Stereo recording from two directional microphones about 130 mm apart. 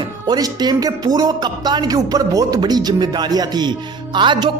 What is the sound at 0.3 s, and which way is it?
Speech, 30° right (ahead or behind).